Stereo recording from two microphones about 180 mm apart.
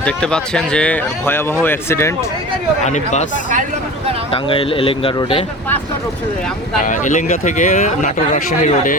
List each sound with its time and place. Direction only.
0.0 s speech: 5° left (ahead or behind)
2.8 s speech: 40° left (ahead or behind)
4.3 s speech: 30° left (ahead or behind)
6.8 s speech: 45° left (ahead or behind)